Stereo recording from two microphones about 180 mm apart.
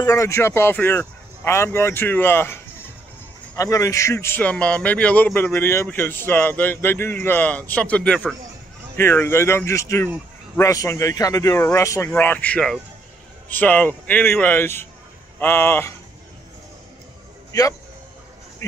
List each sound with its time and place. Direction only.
0.0 s a man's voice: 15° left (ahead or behind)
17.5 s a man's voice: 20° left (ahead or behind)